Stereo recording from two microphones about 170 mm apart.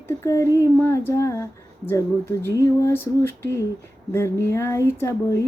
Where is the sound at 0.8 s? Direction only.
15° left (ahead or behind).